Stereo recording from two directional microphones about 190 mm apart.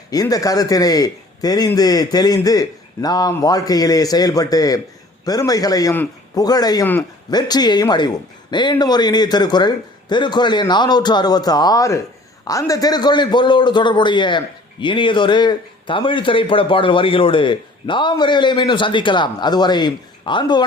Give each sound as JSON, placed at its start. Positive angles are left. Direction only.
{"t": 0.1, "sound": "a man's voice", "side_deg": 20}